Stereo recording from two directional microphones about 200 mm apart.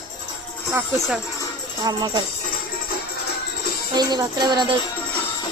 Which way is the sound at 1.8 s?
20° right (ahead or behind).